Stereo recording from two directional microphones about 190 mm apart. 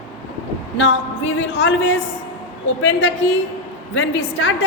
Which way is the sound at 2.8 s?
70° left (ahead or behind).